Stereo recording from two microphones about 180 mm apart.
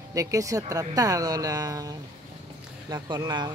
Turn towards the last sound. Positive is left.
turn(degrees=-25)  # may be behind; listen again after turning